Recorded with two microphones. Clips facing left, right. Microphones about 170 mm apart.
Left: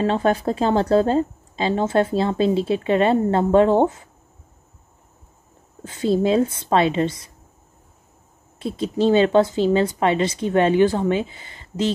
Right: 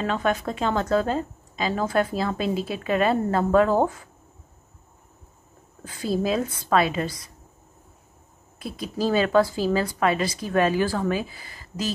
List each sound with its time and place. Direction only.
0.0 s speech: 30° left (ahead or behind)
5.9 s speech: 25° left (ahead or behind)
8.5 s speech: 25° left (ahead or behind)